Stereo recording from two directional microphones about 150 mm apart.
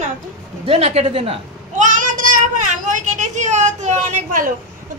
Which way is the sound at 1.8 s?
60° right (ahead or behind).